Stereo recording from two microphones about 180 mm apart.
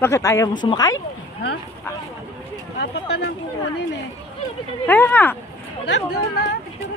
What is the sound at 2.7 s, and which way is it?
Speech, 70° left (ahead or behind).